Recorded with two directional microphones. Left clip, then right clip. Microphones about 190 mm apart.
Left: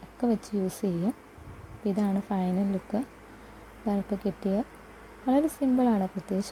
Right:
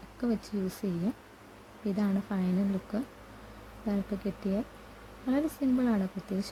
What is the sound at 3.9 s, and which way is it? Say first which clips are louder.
Speech: left 4 dB; 15° left (ahead or behind).